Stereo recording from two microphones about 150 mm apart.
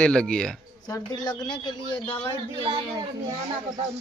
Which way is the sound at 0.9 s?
25° left (ahead or behind).